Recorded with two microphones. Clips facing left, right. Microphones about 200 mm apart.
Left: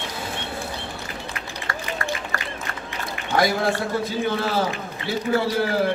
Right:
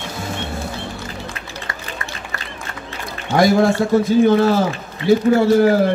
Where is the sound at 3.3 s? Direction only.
45° right (ahead or behind).